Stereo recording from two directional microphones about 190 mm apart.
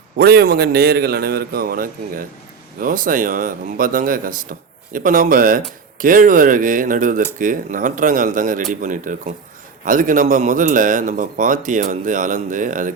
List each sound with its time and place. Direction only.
0.2 s a man's voice: 55° right (ahead or behind)